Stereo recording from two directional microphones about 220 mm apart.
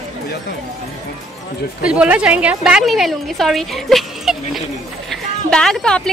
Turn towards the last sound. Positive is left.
turn(degrees=5)  # may be behind; listen again after turning